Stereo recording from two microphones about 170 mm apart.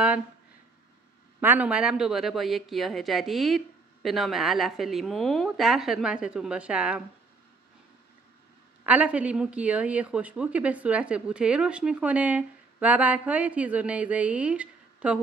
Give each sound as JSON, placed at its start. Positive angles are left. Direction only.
{"t": 1.4, "sound": "speech", "side_deg": -10}
{"t": 8.8, "sound": "a woman's voice", "side_deg": -10}